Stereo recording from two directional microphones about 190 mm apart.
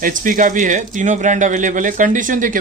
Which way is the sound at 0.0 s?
45° right (ahead or behind).